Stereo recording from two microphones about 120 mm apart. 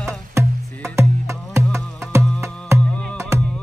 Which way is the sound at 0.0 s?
25° right (ahead or behind).